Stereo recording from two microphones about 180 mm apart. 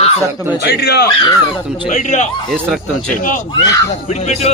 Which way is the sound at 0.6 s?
60° left (ahead or behind).